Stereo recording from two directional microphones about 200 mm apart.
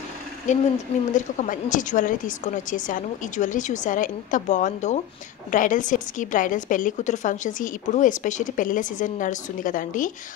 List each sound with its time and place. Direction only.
0.5 s a woman's voice: 35° left (ahead or behind)